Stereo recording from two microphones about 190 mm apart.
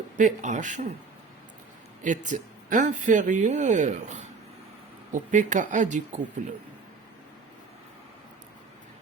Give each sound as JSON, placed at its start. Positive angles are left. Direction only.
{"t": 0.2, "sound": "speech", "side_deg": -40}
{"t": 2.0, "sound": "speech", "side_deg": -40}